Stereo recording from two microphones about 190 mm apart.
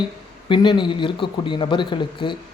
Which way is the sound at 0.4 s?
25° left (ahead or behind).